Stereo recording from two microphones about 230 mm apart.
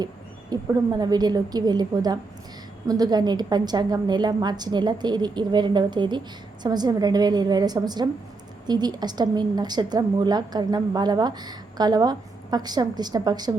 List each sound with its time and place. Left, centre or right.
0.5 s a woman's voice: centre